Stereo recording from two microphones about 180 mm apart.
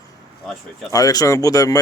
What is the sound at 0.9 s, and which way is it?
Speech, 20° left (ahead or behind).